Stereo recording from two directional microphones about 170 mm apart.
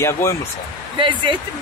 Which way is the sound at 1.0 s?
30° right (ahead or behind).